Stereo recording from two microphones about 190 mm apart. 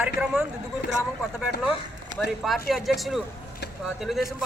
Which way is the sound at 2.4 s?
Centre (ahead or behind).